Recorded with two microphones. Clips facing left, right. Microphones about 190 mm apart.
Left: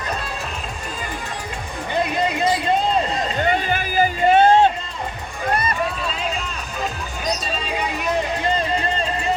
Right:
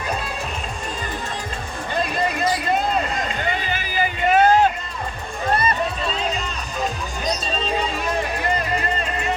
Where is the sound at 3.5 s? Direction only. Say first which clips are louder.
Left 5 dB; 50° left (ahead or behind); by 4.7 s 25° left (ahead or behind).